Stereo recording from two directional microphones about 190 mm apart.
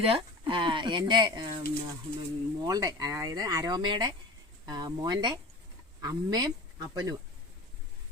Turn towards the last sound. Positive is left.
turn(degrees=-20)  # may be behind; listen again after turning